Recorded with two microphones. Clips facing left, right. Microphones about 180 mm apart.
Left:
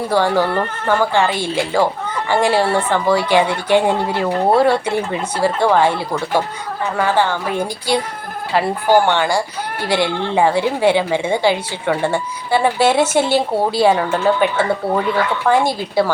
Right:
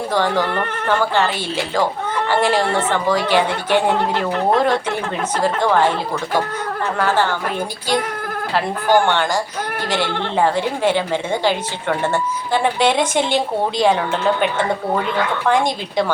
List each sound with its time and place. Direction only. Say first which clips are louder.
0.1 s a woman's voice: left 3 dB; 10° left (ahead or behind)
2.3 s a woman's voice: left 3 dB; 10° left (ahead or behind)
7.0 s a woman's voice: left 2 dB; 10° left (ahead or behind)
15.4 s a woman's voice: left 2 dB; 5° left (ahead or behind)